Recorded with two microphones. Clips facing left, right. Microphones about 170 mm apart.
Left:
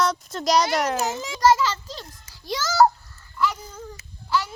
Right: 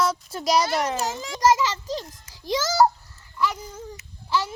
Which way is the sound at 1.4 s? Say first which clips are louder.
Left 1 dB; 20° right (ahead or behind).